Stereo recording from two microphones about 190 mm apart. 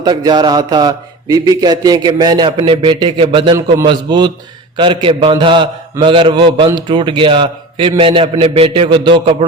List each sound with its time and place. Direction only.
0.0 s a man's voice: 20° right (ahead or behind)